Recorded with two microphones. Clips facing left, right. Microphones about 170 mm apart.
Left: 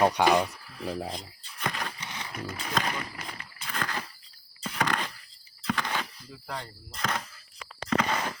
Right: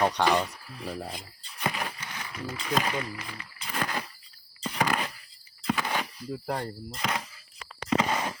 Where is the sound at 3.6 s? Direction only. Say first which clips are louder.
Right 2 dB; 10° right (ahead or behind).